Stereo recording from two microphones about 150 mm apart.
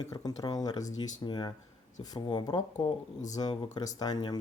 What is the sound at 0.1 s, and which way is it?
Speech, 25° left (ahead or behind).